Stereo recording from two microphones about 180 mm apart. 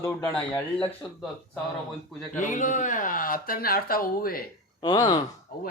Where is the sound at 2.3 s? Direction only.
45° left (ahead or behind).